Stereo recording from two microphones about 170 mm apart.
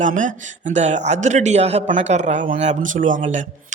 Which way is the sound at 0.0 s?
50° right (ahead or behind).